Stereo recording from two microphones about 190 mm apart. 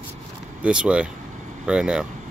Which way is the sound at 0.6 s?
5° right (ahead or behind).